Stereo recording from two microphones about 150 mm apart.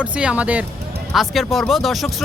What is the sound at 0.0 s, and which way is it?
Speech, 10° right (ahead or behind).